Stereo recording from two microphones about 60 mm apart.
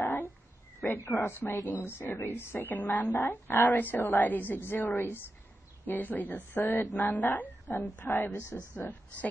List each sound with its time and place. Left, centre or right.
0.7 s a woman's voice: left
1.6 s speech: left
1.9 s speech: left